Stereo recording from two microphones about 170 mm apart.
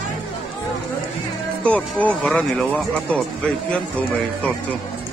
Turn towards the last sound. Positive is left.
turn(degrees=5)  # may be behind; listen again after turning